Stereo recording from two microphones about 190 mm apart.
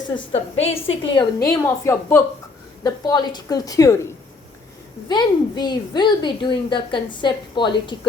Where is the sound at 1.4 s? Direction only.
15° left (ahead or behind).